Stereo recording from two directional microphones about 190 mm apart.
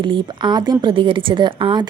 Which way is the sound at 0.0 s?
25° right (ahead or behind).